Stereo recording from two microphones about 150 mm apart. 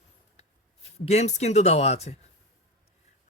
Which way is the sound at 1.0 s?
45° left (ahead or behind).